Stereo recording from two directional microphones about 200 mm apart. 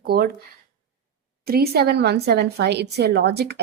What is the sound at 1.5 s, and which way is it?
A woman's voice, 50° right (ahead or behind).